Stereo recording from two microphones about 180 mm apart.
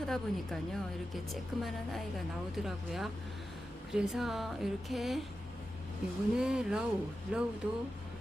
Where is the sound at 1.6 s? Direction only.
Centre (ahead or behind).